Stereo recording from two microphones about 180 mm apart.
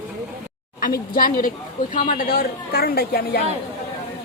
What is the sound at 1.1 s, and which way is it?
A woman's voice, 50° left (ahead or behind).